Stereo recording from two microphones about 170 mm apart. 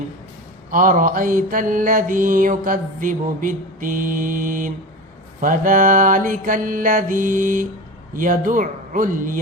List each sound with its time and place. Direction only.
0.7 s mantra: 55° right (ahead or behind)